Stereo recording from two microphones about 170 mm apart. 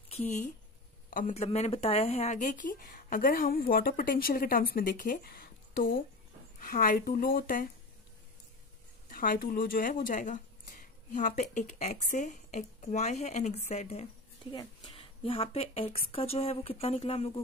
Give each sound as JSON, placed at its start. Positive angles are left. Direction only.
{"t": 1.1, "sound": "speech", "side_deg": 45}
{"t": 9.1, "sound": "a woman's voice", "side_deg": 55}